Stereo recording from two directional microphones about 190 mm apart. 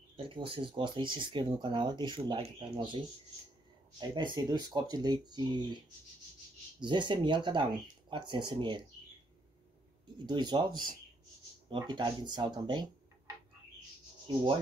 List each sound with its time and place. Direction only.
0.2 s speech: 25° right (ahead or behind)
4.0 s speech: 25° right (ahead or behind)
6.8 s speech: 25° right (ahead or behind)
10.1 s speech: 25° right (ahead or behind)
14.2 s rub: 25° right (ahead or behind)